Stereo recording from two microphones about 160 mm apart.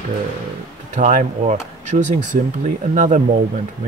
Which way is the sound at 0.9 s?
50° right (ahead or behind).